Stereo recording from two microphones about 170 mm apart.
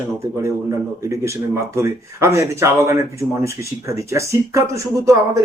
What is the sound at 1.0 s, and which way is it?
A man's voice, 15° right (ahead or behind).